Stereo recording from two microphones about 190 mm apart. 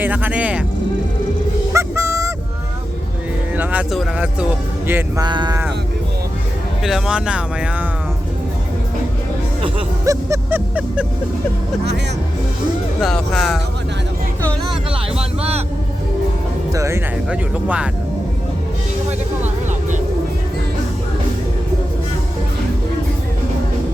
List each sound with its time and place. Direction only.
0.0 s speech: 10° right (ahead or behind)
1.7 s honk: 15° right (ahead or behind)
3.6 s speech: 5° right (ahead or behind)
5.2 s speech: 25° right (ahead or behind)
6.8 s speech: 5° right (ahead or behind)
10.1 s vehicle: 15° right (ahead or behind)
13.0 s speech: centre (ahead or behind)
14.4 s vehicle: centre (ahead or behind)
15.4 s vehicle: 30° right (ahead or behind)
16.7 s vehicle: 15° right (ahead or behind)
17.2 s speech: 5° right (ahead or behind)